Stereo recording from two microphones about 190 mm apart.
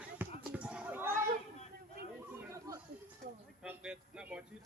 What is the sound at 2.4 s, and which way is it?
Chatter, 15° right (ahead or behind).